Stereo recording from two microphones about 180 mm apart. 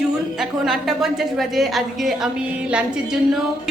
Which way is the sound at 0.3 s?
Centre (ahead or behind).